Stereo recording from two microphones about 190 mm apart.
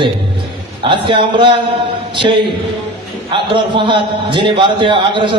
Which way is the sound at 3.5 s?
25° right (ahead or behind).